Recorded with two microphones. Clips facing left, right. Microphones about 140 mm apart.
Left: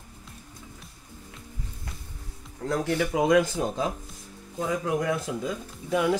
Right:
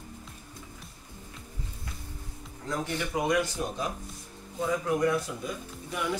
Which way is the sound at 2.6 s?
80° left.